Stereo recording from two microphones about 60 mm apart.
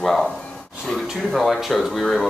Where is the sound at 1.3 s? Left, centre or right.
Centre.